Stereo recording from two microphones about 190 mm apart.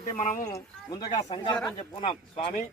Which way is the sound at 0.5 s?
20° left (ahead or behind).